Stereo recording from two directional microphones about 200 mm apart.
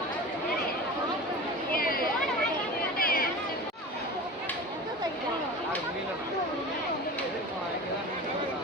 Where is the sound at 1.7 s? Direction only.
45° left (ahead or behind).